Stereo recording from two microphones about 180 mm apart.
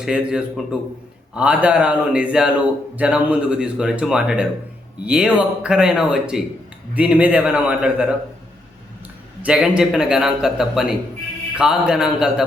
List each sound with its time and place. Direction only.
0.0 s a man's voice: 5° right (ahead or behind)
9.4 s a man's voice: 5° right (ahead or behind)